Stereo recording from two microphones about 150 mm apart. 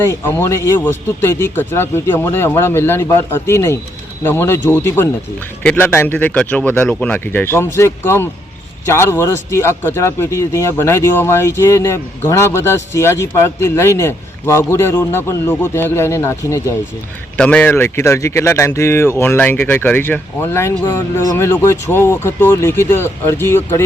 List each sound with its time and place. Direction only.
0.1 s a man's voice: 15° left (ahead or behind)